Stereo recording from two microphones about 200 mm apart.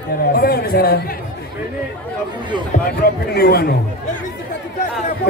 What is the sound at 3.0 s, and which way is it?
Speech, 50° left (ahead or behind).